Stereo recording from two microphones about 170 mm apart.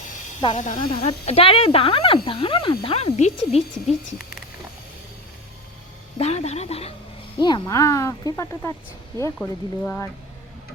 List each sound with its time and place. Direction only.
0.5 s speech: 50° left (ahead or behind)
1.0 s speech: 35° left (ahead or behind)
6.1 s speech: 40° left (ahead or behind)
7.3 s speech: 25° left (ahead or behind)